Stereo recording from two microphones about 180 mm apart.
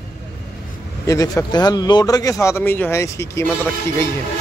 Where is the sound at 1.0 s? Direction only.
20° left (ahead or behind).